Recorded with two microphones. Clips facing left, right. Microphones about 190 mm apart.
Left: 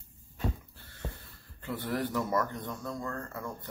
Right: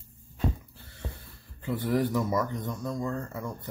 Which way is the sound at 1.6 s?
15° right (ahead or behind).